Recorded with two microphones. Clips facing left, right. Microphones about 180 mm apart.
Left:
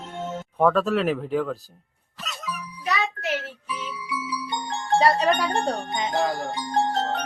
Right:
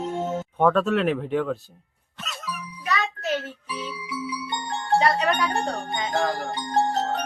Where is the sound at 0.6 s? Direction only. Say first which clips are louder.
Even; centre (ahead or behind).